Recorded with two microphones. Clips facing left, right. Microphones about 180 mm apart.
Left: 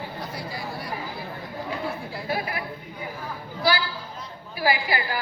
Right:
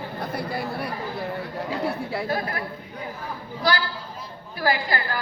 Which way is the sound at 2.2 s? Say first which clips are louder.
Left 2 dB; 10° left (ahead or behind).